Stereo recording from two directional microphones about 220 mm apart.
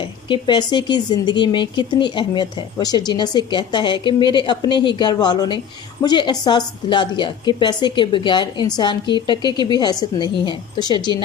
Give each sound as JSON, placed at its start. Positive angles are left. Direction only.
{"t": 0.3, "sound": "speech", "side_deg": 20}